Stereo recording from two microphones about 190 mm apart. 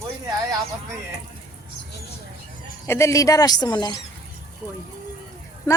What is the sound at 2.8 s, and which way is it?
A woman's voice, 15° left (ahead or behind).